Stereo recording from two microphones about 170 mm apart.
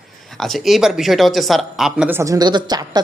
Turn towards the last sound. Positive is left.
turn(degrees=-25)  # may be behind; listen again after turning